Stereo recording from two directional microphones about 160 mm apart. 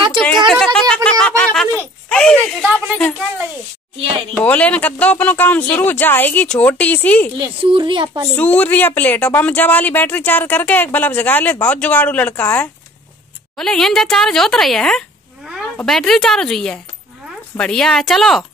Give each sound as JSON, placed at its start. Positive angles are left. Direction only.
{"t": 0.5, "sound": "a sound", "side_deg": 5}
{"t": 4.3, "sound": "speech", "side_deg": 10}
{"t": 7.3, "sound": "speech", "side_deg": -30}
{"t": 8.4, "sound": "speech", "side_deg": 10}